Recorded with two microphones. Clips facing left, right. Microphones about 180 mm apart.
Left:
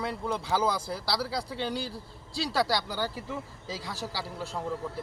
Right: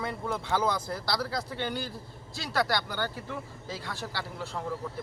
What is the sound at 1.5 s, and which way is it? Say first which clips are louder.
Speech: left 1 dB; 90° left.